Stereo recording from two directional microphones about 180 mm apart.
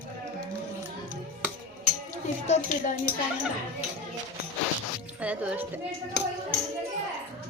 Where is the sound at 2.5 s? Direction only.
40° left (ahead or behind).